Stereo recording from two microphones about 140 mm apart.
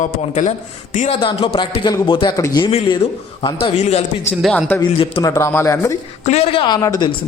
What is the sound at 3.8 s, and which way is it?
Speech, 50° left (ahead or behind).